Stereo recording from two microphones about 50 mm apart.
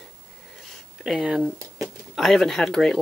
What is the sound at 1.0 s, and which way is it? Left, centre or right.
Speech, centre.